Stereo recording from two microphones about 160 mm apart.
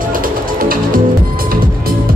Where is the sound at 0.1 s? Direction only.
65° right (ahead or behind).